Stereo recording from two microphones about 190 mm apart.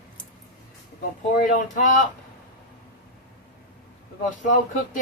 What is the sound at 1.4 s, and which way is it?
Speech, 40° left (ahead or behind).